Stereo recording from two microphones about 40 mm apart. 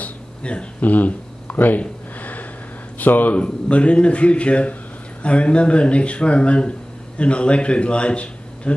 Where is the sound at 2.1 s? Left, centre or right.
Left.